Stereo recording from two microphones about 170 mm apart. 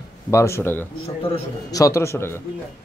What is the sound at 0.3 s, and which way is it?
Speech, 15° left (ahead or behind).